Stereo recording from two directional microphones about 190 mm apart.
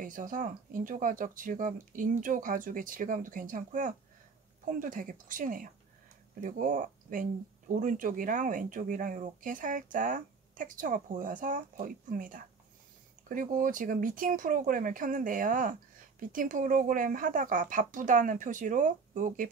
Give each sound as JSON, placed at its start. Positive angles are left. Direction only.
{"t": 0.0, "sound": "speech", "side_deg": -45}